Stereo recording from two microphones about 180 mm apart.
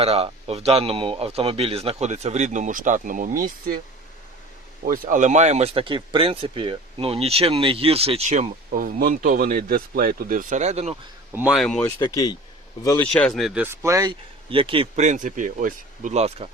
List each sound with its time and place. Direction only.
0.0 s speech: 35° right (ahead or behind)
4.9 s speech: 45° right (ahead or behind)
11.3 s speech: 10° right (ahead or behind)
11.5 s speech: 5° left (ahead or behind)
11.9 s speech: 20° left (ahead or behind)
13.1 s speech: 5° left (ahead or behind); by 15.0 s 30° right (ahead or behind)
15.0 s speech: 45° right (ahead or behind)